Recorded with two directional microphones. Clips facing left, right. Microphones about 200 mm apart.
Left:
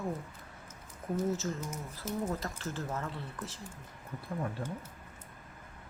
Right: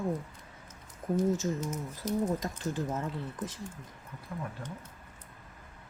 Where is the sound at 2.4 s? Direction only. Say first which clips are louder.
Right 4 dB; 15° right (ahead or behind).